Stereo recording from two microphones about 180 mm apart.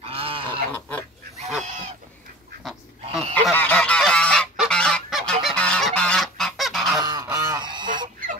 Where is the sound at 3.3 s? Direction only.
10° left (ahead or behind).